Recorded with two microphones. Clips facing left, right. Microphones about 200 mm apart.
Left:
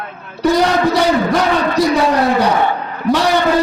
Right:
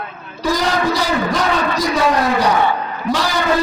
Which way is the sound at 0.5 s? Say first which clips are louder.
Left 4 dB; 65° left (ahead or behind).